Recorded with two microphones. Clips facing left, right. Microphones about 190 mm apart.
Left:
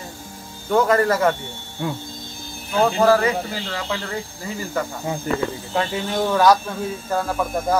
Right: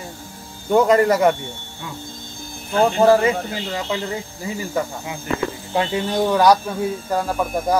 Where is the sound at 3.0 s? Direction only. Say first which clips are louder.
Right 4 dB; 20° right (ahead or behind).